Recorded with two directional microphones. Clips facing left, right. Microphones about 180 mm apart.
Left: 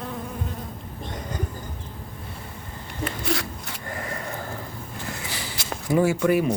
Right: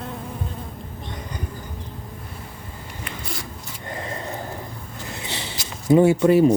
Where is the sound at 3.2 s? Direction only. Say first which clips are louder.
Left 7 dB; 75° left (ahead or behind).